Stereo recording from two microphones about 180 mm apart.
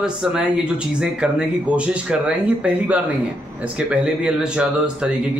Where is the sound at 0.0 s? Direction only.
5° right (ahead or behind).